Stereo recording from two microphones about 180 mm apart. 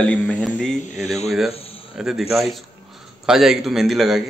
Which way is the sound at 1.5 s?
35° left (ahead or behind).